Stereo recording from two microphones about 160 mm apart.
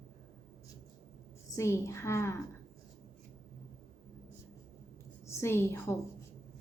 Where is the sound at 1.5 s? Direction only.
15° left (ahead or behind).